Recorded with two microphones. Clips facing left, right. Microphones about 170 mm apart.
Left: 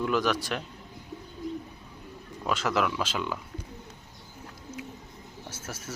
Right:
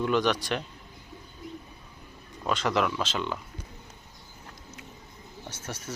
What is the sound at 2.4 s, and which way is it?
Speech, 5° left (ahead or behind).